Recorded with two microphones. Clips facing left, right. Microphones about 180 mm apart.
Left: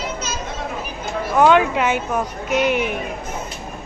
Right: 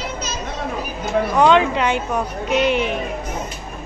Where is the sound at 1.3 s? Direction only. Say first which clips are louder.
Left 1 dB; 5° left (ahead or behind).